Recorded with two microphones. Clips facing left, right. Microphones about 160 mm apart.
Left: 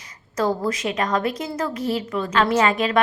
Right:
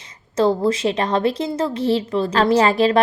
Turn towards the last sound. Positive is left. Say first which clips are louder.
# right 4 dB
turn(degrees=-30)  # may be behind; listen again after turning